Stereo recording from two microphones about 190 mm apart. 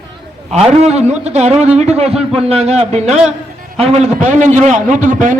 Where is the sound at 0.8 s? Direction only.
35° right (ahead or behind).